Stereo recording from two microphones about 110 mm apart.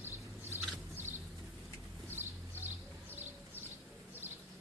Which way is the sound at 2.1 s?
20° right (ahead or behind).